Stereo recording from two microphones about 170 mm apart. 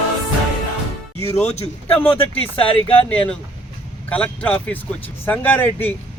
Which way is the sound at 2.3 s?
35° left (ahead or behind).